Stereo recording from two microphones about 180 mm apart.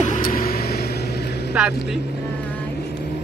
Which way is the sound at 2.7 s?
65° left (ahead or behind).